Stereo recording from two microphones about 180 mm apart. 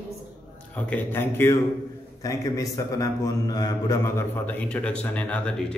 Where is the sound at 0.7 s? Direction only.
10° left (ahead or behind).